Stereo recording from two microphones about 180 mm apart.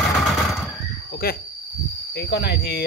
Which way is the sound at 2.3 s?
65° left (ahead or behind).